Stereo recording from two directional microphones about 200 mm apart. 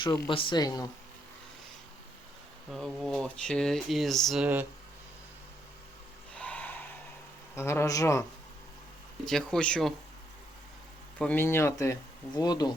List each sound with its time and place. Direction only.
0.3 s speech: 25° left (ahead or behind)
2.7 s speech: centre (ahead or behind)
6.3 s snort: 5° left (ahead or behind)
7.5 s speech: 15° left (ahead or behind)
9.2 s speech: 5° left (ahead or behind)
11.2 s speech: 10° left (ahead or behind)